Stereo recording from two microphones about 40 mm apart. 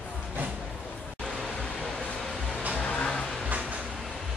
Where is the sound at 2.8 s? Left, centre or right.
Left.